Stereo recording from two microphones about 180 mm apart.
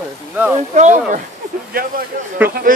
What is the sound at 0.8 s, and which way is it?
Speech, 40° right (ahead or behind).